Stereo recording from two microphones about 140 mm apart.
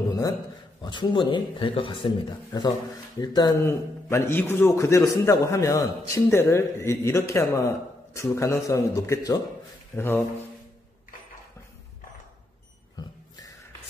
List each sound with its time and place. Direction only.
0.8 s a man's voice: 35° left (ahead or behind)
3.6 s a man's voice: 15° left (ahead or behind)